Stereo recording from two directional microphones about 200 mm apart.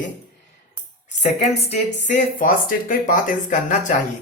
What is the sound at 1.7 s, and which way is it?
Speech, 40° left (ahead or behind).